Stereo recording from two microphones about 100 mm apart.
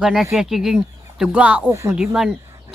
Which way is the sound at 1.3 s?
15° right (ahead or behind).